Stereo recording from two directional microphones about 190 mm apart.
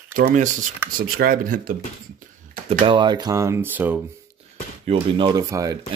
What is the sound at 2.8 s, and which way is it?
Speech, 25° right (ahead or behind).